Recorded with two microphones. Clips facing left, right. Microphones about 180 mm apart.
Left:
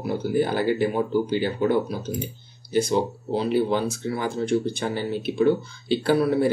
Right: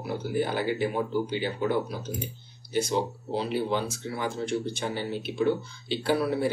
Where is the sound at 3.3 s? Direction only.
45° left (ahead or behind).